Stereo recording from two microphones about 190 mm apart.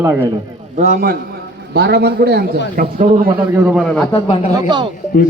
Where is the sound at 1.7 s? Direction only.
60° right (ahead or behind).